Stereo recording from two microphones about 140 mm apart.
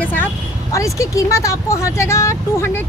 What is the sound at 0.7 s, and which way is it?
Speech, 20° left (ahead or behind).